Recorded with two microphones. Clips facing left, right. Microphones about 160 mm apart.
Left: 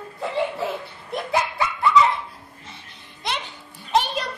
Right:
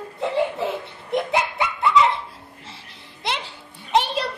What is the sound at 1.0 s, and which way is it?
Belly laugh, 20° right (ahead or behind).